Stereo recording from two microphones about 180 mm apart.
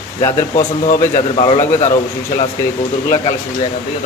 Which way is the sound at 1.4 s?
30° left (ahead or behind).